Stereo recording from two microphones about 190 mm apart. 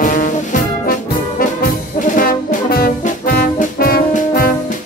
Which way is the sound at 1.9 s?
50° left (ahead or behind).